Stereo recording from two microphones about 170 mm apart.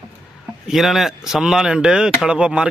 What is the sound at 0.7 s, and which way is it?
A man's voice, centre (ahead or behind).